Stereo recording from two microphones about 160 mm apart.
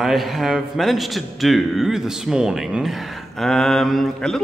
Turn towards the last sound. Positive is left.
turn(degrees=0)  # may be behind; listen again after turning